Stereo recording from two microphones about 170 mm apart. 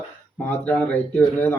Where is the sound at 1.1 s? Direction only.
10° left (ahead or behind).